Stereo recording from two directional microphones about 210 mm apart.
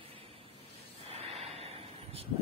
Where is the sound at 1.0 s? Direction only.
30° right (ahead or behind).